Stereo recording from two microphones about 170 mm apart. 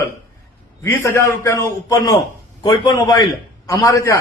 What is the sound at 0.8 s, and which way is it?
A man's voice, 15° left (ahead or behind).